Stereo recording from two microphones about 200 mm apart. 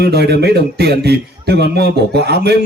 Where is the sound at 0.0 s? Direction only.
55° right (ahead or behind).